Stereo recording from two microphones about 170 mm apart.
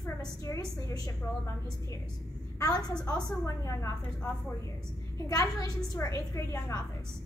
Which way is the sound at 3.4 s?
15° left (ahead or behind).